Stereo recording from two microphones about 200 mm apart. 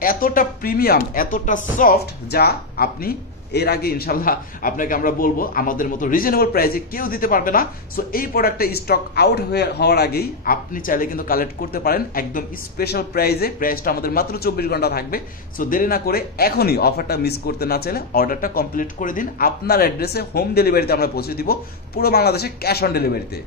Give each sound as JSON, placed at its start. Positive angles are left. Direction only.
{"t": 0.0, "sound": "speech", "side_deg": 45}